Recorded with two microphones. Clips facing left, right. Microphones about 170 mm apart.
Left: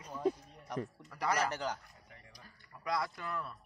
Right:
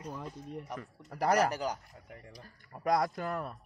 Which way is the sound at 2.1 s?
45° right (ahead or behind).